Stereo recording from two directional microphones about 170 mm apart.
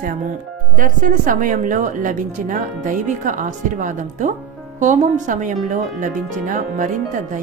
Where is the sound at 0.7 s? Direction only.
55° right (ahead or behind).